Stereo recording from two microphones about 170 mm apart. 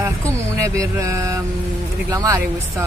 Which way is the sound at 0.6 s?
20° right (ahead or behind).